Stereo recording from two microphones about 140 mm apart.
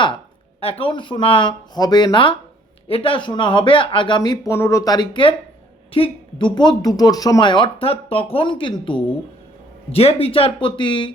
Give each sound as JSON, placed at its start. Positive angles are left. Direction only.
{"t": 0.6, "sound": "speech", "side_deg": 40}